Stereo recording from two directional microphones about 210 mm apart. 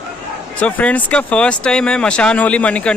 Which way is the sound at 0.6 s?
5° left (ahead or behind).